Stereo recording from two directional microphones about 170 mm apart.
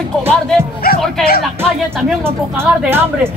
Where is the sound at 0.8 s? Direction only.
60° left (ahead or behind).